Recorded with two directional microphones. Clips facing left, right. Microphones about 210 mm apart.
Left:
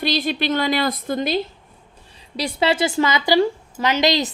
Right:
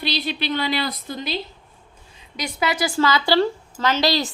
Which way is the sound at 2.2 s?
30° left (ahead or behind).